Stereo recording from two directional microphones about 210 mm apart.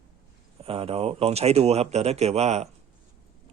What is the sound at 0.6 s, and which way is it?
Speech, 30° right (ahead or behind).